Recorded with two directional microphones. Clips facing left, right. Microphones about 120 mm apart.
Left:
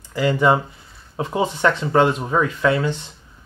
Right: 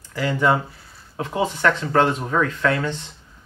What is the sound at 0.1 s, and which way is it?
Speech, 20° left (ahead or behind).